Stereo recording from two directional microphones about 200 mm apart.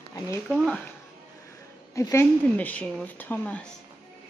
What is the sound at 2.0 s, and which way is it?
Speech, 15° left (ahead or behind).